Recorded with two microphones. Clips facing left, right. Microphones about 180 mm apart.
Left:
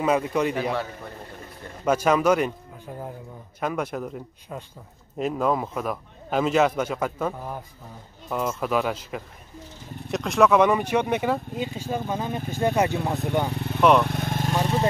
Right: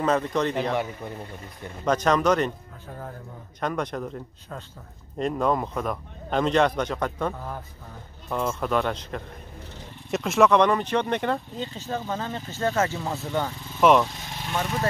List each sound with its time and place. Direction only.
0.0 s speech: 10° left (ahead or behind)
1.9 s speech: 5° left (ahead or behind)
3.6 s a man's voice: 5° left (ahead or behind)
13.5 s speech: 65° left (ahead or behind)
13.7 s a man's voice: centre (ahead or behind)
14.0 s speech: 60° left (ahead or behind)
14.6 s vehicle: 30° left (ahead or behind)